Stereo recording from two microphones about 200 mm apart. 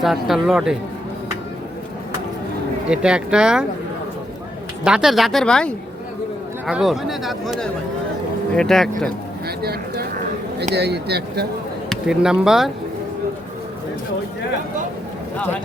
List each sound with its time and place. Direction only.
0.0 s speech: centre (ahead or behind)
2.9 s speech: 5° right (ahead or behind)
4.8 s speech: 5° right (ahead or behind)
9.6 s speech: 50° right (ahead or behind)
11.9 s speech: 5° right (ahead or behind)